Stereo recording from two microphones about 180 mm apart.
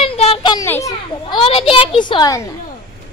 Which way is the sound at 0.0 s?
35° left (ahead or behind).